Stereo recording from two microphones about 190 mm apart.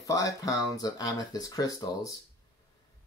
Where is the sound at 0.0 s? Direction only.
20° left (ahead or behind).